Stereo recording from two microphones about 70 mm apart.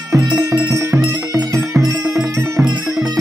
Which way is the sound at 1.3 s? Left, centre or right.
Right.